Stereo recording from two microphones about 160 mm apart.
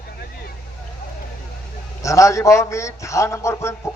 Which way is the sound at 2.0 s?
20° left (ahead or behind).